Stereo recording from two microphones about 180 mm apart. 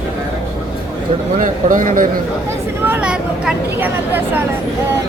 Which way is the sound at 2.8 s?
10° right (ahead or behind).